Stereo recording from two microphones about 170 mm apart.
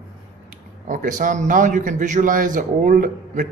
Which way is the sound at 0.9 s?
50° right (ahead or behind).